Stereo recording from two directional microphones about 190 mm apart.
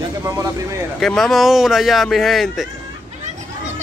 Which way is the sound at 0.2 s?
15° right (ahead or behind).